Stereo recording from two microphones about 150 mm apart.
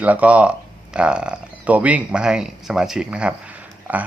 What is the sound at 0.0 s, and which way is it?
Speech, 10° right (ahead or behind).